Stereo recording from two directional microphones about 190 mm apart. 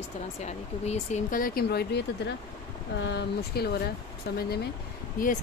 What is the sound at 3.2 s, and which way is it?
Speech, 60° left (ahead or behind).